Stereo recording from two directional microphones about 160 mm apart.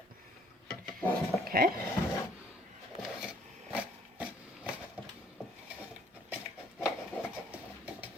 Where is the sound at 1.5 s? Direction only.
65° right (ahead or behind).